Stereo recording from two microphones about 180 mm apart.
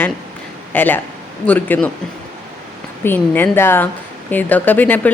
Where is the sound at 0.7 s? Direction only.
10° left (ahead or behind).